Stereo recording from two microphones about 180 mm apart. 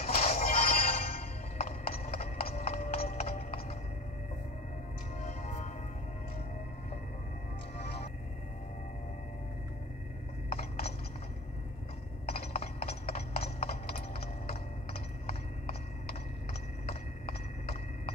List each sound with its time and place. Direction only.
0.0 s music: 35° left (ahead or behind)
1.0 s clip-clop: 35° left (ahead or behind)
3.1 s music: 35° left (ahead or behind)
5.2 s music: 40° left (ahead or behind)
10.5 s a sound: 35° left (ahead or behind)
12.3 s clip-clop: 35° left (ahead or behind)